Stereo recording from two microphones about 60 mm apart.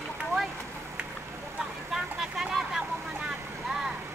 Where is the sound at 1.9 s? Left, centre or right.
Centre.